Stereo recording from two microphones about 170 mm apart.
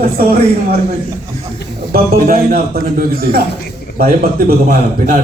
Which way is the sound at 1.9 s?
60° right (ahead or behind).